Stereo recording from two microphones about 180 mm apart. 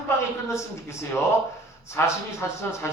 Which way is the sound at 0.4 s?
15° left (ahead or behind).